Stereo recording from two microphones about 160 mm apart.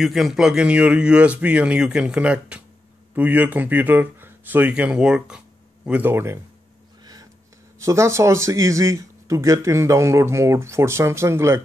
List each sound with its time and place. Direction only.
0.0 s speech: centre (ahead or behind)
7.8 s speech: 15° right (ahead or behind)